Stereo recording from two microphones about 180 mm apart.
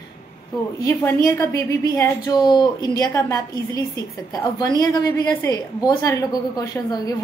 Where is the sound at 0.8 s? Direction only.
15° left (ahead or behind).